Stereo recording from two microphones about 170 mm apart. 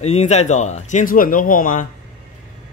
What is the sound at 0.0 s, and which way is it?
Speech, 40° left (ahead or behind).